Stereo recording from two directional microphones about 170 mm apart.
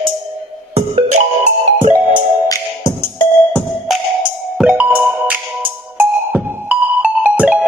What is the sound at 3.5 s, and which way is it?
Music, centre (ahead or behind).